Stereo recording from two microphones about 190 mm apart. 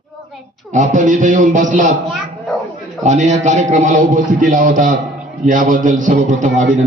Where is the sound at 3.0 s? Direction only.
40° right (ahead or behind).